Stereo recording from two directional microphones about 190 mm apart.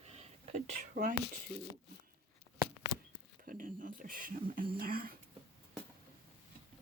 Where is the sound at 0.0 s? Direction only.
35° right (ahead or behind).